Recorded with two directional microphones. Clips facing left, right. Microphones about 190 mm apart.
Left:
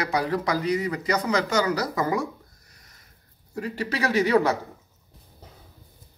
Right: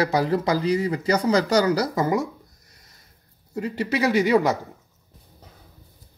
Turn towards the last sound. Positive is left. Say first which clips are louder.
# right 2 dB
turn(degrees=-15)  # may be behind; listen again after turning